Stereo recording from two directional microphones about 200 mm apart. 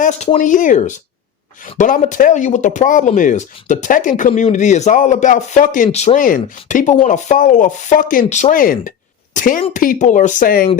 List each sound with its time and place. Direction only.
0.0 s speech: 35° left (ahead or behind)